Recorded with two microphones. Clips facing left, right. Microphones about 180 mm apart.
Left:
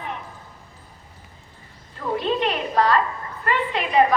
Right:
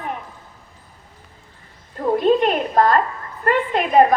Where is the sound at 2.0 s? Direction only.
45° right (ahead or behind).